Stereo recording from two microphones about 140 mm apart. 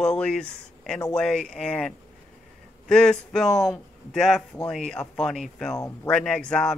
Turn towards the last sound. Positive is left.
turn(degrees=5)  # may be behind; listen again after turning